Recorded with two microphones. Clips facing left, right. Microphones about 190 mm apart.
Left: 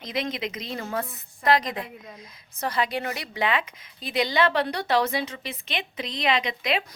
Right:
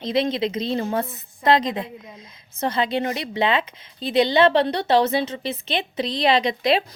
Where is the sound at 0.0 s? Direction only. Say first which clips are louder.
Right 8 dB; 30° right (ahead or behind).